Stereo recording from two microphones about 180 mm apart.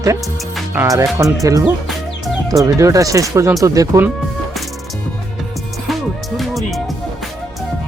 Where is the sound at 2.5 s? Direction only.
20° right (ahead or behind).